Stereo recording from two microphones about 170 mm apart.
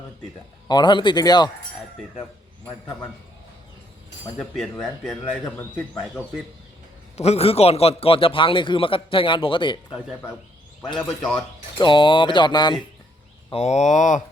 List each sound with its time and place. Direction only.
0.7 s speech: 25° left (ahead or behind)
4.4 s speech: 5° left (ahead or behind)
7.2 s a man's voice: 40° left (ahead or behind)
10.9 s speech: 5° left (ahead or behind)
11.8 s speech: 30° left (ahead or behind)
13.5 s speech: 40° left (ahead or behind)